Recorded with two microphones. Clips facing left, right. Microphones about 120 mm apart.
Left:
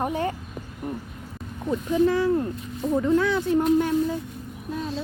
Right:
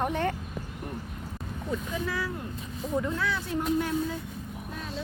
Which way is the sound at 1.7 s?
25° left (ahead or behind).